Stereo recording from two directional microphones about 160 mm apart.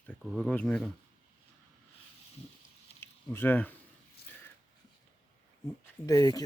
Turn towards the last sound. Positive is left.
turn(degrees=20)  # may be behind; listen again after turning